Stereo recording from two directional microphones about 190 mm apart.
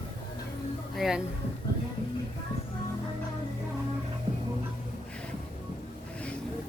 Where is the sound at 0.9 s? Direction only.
Centre (ahead or behind).